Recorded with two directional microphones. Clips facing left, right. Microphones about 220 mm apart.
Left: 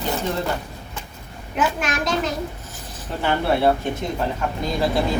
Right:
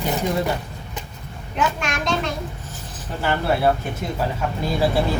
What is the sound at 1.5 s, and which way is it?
Speech, 5° left (ahead or behind).